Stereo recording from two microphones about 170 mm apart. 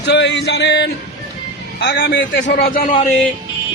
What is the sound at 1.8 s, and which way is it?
Speech, 75° left (ahead or behind).